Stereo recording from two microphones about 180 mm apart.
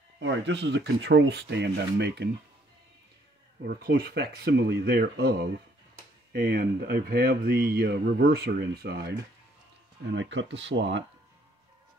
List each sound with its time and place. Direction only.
0.2 s speech: 75° right (ahead or behind)
3.6 s speech: 60° right (ahead or behind)
6.3 s speech: 55° right (ahead or behind)
10.1 s speech: 90° right